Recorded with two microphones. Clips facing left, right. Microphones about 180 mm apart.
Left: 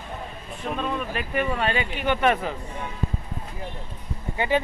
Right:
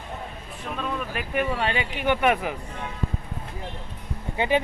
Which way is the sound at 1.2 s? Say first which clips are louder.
Right 1 dB; 10° right (ahead or behind).